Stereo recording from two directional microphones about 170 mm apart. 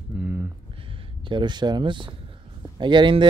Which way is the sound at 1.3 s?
25° right (ahead or behind).